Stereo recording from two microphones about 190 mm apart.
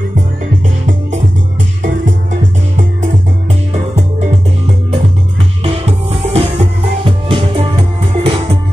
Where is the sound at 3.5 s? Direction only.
35° right (ahead or behind).